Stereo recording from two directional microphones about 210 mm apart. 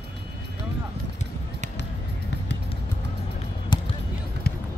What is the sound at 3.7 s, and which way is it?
Basketball bounce, 20° left (ahead or behind).